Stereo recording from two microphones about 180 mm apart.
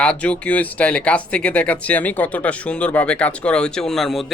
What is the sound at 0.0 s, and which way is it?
Speech, 5° left (ahead or behind).